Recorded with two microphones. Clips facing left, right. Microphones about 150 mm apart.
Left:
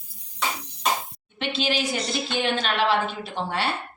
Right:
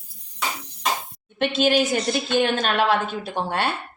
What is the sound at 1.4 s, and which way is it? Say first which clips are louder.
A woman's voice: right 6 dB; 50° right (ahead or behind).